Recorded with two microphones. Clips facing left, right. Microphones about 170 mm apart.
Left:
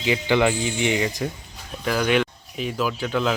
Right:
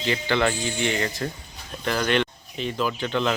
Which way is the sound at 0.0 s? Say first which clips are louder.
Left 3 dB; 15° left (ahead or behind).